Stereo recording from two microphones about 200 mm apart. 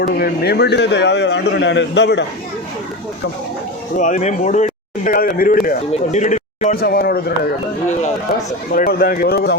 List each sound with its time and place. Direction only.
0.0 s a man's voice: 50° left (ahead or behind)
3.9 s speech: 40° left (ahead or behind)
5.9 s speech: 35° left (ahead or behind)
8.7 s speech: 50° left (ahead or behind)